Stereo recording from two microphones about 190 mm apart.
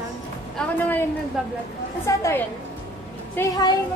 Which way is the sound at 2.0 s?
15° left (ahead or behind).